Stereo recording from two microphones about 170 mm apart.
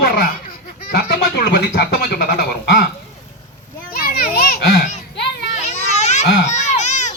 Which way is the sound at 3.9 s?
60° left (ahead or behind).